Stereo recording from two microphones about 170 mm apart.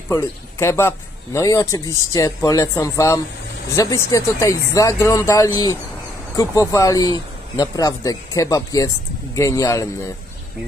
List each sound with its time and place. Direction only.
0.1 s a man's voice: 15° left (ahead or behind)